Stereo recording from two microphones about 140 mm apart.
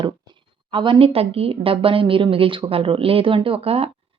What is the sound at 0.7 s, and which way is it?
A woman's voice, 40° right (ahead or behind).